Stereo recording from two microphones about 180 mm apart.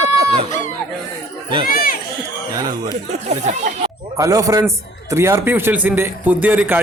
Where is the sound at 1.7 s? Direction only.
55° left (ahead or behind).